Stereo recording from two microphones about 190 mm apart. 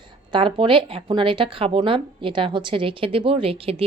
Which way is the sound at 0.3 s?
25° right (ahead or behind).